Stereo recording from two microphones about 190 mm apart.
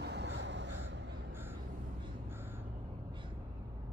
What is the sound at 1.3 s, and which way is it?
Vehicle, 10° right (ahead or behind).